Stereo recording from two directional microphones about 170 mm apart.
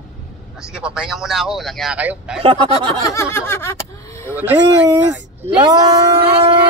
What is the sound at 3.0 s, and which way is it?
Snicker, 15° left (ahead or behind).